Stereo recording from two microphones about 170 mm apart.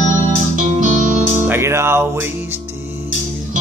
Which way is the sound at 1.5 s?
15° right (ahead or behind).